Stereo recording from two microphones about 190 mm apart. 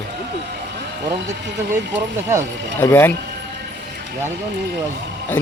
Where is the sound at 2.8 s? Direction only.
10° left (ahead or behind).